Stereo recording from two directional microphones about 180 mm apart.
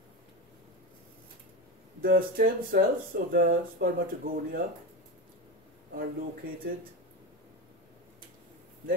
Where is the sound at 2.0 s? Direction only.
55° right (ahead or behind).